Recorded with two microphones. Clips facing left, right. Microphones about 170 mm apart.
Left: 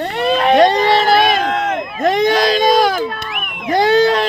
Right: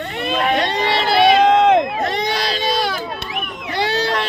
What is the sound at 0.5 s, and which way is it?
Speech, 45° left (ahead or behind).